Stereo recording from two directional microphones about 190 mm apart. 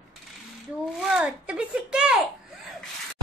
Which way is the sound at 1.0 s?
5° right (ahead or behind).